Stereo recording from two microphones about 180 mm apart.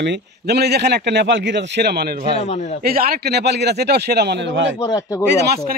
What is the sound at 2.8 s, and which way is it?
Speech, 55° right (ahead or behind).